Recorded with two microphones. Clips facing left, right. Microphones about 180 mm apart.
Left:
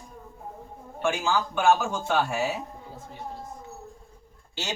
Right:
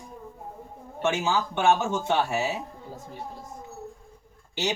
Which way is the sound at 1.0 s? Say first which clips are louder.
Right 1 dB; 20° right (ahead or behind).